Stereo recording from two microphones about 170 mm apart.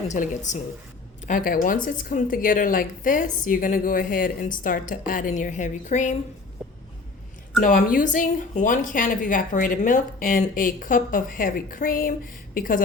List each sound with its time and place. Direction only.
0.1 s a woman's voice: 45° left (ahead or behind)
1.3 s a woman's voice: 55° left (ahead or behind)
6.6 s vehicle: 5° right (ahead or behind)
7.6 s a woman's voice: 55° left (ahead or behind)